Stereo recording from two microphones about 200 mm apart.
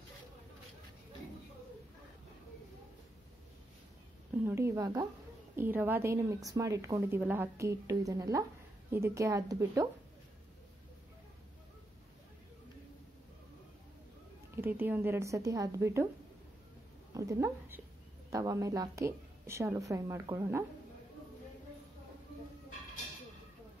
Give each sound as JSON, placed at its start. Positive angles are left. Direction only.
{"t": 4.5, "sound": "a woman's voice", "side_deg": -15}
{"t": 14.5, "sound": "a woman's voice", "side_deg": -10}
{"t": 17.1, "sound": "a woman's voice", "side_deg": -15}